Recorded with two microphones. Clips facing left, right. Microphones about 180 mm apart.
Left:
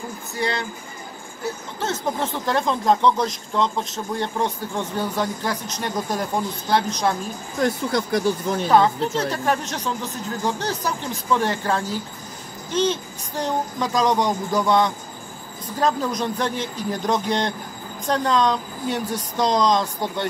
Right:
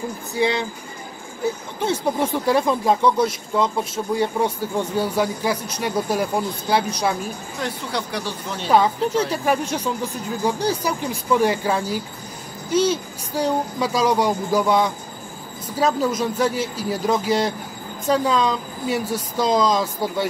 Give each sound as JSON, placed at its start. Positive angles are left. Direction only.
{"t": 0.3, "sound": "speech", "side_deg": -15}
{"t": 1.8, "sound": "speech", "side_deg": -10}
{"t": 7.6, "sound": "speech", "side_deg": 45}
{"t": 8.6, "sound": "speech", "side_deg": -10}